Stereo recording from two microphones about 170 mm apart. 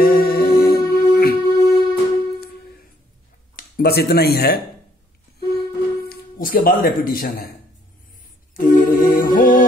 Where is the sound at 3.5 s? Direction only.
60° left (ahead or behind).